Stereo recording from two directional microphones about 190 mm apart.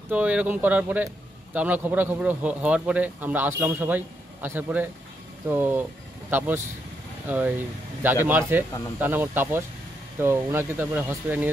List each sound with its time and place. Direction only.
0.1 s speech: 5° right (ahead or behind)